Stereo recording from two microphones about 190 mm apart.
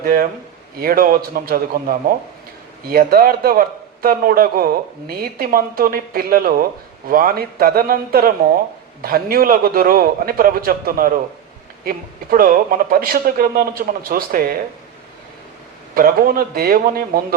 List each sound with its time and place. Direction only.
0.0 s speech: 50° right (ahead or behind)
16.0 s speech: 50° right (ahead or behind)